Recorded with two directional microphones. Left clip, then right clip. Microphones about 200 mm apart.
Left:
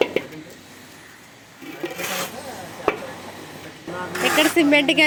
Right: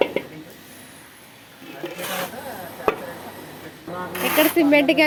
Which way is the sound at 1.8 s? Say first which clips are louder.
Left 2 dB; 45° left (ahead or behind).